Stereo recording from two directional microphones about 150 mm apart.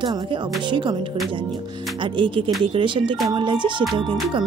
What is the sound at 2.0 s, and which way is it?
Speech, 35° right (ahead or behind).